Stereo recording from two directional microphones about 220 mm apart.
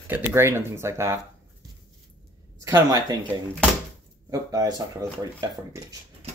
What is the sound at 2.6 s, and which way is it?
Speech, 15° right (ahead or behind).